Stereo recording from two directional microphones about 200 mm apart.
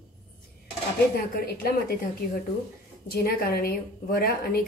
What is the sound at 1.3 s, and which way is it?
A woman's voice, 50° left (ahead or behind).